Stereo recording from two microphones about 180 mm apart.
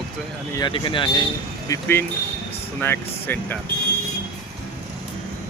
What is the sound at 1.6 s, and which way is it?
Speech, 15° left (ahead or behind).